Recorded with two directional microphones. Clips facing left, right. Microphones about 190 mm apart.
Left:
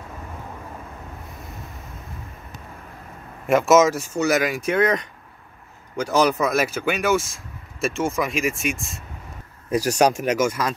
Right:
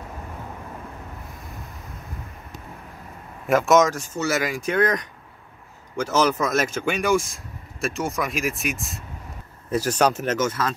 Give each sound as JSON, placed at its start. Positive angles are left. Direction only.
{"t": 3.4, "sound": "speech", "side_deg": 0}
{"t": 9.7, "sound": "speech", "side_deg": 10}